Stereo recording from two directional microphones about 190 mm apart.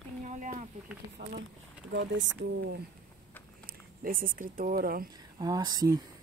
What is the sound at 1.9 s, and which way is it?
Speech, 75° right (ahead or behind).